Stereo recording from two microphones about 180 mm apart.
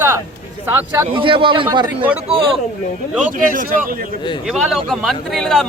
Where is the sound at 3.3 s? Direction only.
50° right (ahead or behind).